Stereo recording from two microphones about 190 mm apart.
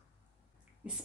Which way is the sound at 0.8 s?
5° right (ahead or behind).